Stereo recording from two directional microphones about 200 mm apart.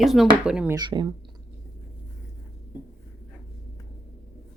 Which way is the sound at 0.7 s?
20° right (ahead or behind).